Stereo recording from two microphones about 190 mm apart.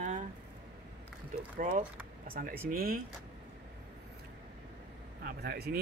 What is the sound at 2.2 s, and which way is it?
Speech, 50° right (ahead or behind).